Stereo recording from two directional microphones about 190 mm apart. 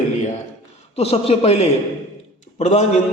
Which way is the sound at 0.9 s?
35° left (ahead or behind).